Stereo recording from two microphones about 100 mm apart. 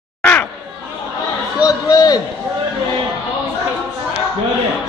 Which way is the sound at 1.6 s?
35° left (ahead or behind).